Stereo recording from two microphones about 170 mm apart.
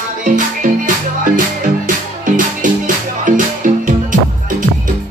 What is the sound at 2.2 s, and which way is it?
Music, 50° right (ahead or behind).